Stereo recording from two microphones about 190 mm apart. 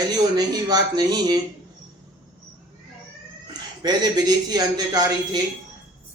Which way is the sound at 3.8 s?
20° right (ahead or behind).